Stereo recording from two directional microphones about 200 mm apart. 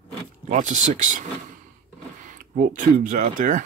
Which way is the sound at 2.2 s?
40° right (ahead or behind).